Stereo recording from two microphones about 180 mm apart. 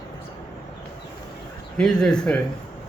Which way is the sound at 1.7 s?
5° left (ahead or behind).